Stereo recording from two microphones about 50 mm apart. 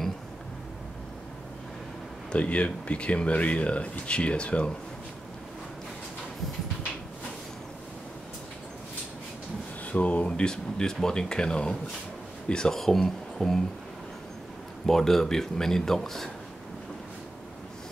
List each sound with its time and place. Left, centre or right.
2.3 s speech: left
9.9 s speech: left; by 13.7 s centre
14.9 s speech: centre